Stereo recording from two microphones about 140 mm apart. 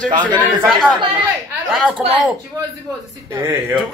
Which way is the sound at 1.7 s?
5° left (ahead or behind).